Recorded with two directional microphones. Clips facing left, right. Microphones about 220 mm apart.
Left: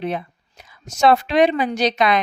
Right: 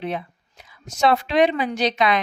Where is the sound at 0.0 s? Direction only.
45° left (ahead or behind).